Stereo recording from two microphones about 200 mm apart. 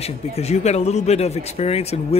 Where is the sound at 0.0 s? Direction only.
30° left (ahead or behind).